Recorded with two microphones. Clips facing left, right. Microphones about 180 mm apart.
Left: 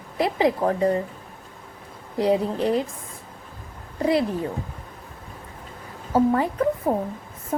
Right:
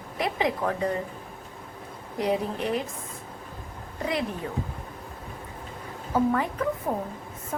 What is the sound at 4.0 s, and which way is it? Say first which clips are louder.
Speech: left 8 dB; 35° left (ahead or behind).